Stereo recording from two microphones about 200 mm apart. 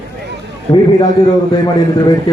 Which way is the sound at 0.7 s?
20° left (ahead or behind).